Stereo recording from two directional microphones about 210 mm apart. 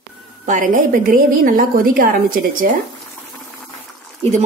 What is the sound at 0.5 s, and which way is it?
A woman's voice, 40° right (ahead or behind).